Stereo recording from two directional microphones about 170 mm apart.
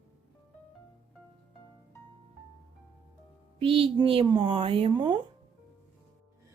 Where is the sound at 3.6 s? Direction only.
30° right (ahead or behind).